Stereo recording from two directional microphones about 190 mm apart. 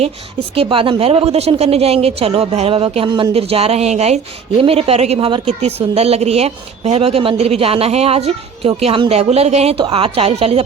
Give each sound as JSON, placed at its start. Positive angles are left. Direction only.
{"t": 0.5, "sound": "speech", "side_deg": -30}